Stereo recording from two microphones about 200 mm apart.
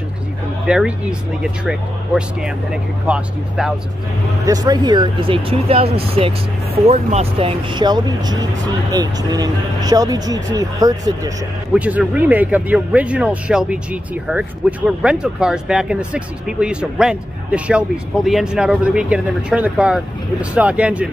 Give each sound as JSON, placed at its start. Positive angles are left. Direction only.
{"t": 0.7, "sound": "speech", "side_deg": -5}
{"t": 4.5, "sound": "speech", "side_deg": -20}
{"t": 11.7, "sound": "speech", "side_deg": -5}